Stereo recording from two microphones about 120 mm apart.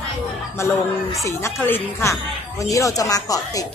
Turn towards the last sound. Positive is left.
turn(degrees=30)  # may be behind; listen again after turning